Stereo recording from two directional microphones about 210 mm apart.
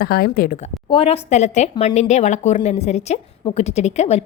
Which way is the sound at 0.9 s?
25° left (ahead or behind).